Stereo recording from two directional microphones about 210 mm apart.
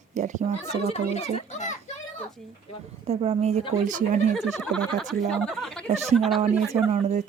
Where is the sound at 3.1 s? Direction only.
30° right (ahead or behind).